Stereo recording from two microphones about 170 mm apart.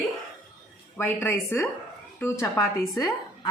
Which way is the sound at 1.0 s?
15° left (ahead or behind).